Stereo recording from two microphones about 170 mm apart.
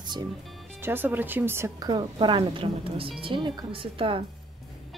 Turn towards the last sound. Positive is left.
turn(degrees=-30)  # may be behind; listen again after turning